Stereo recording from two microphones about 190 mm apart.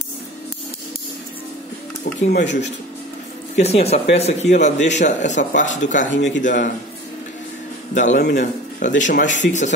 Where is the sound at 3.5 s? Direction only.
35° left (ahead or behind).